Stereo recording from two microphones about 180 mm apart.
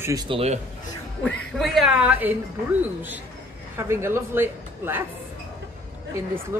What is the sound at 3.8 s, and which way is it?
Speech, 15° right (ahead or behind).